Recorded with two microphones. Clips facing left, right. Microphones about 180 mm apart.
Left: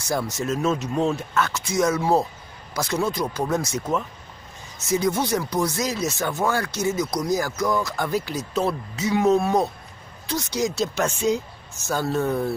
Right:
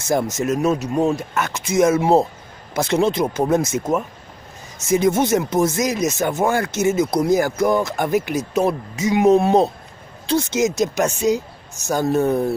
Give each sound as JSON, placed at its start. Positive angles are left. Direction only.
{"t": 0.0, "sound": "speech", "side_deg": -20}
{"t": 4.8, "sound": "speech", "side_deg": -20}